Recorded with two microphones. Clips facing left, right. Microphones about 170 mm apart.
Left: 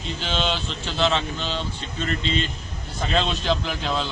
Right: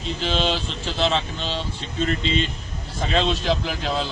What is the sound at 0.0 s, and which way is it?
Speech, centre (ahead or behind).